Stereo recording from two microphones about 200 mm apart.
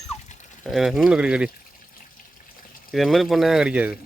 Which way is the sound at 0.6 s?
Centre (ahead or behind).